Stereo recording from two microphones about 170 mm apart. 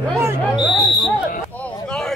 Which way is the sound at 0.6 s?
Centre (ahead or behind).